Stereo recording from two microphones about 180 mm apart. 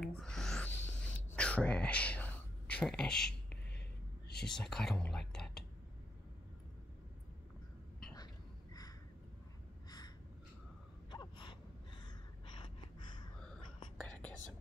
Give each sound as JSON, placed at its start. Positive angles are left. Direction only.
{"t": 0.0, "sound": "a sound", "side_deg": 5}
{"t": 4.3, "sound": "speech", "side_deg": 5}
{"t": 9.8, "sound": "gasp", "side_deg": 20}